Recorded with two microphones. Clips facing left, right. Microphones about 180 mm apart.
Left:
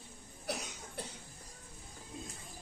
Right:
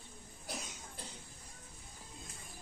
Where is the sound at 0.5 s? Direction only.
70° left (ahead or behind).